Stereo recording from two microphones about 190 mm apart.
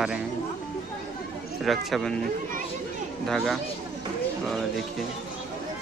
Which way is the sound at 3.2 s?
Centre (ahead or behind).